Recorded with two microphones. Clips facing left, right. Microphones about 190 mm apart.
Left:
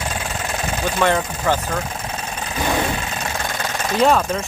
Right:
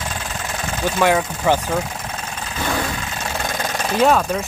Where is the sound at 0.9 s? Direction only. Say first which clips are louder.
Right 2 dB; 5° right (ahead or behind).